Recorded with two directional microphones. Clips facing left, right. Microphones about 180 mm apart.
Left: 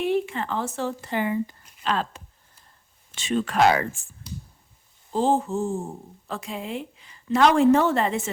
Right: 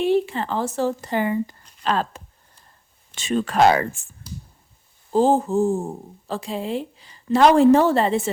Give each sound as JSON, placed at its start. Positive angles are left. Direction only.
{"t": 0.0, "sound": "speech", "side_deg": -30}
{"t": 5.1, "sound": "speech", "side_deg": -40}